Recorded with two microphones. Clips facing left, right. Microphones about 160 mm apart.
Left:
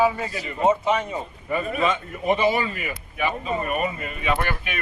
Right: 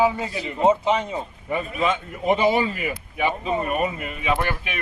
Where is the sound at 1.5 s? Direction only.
15° right (ahead or behind).